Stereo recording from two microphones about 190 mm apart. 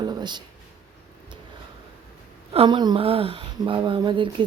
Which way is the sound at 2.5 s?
25° right (ahead or behind).